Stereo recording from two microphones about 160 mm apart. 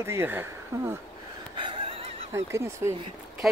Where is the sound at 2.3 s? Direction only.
15° right (ahead or behind).